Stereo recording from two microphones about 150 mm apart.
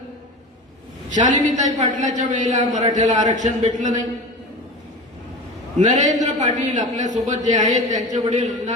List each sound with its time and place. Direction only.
1.1 s a man's voice: 55° right (ahead or behind)
5.8 s a man's voice: 55° right (ahead or behind)